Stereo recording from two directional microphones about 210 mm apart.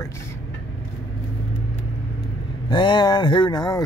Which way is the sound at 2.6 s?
20° left (ahead or behind).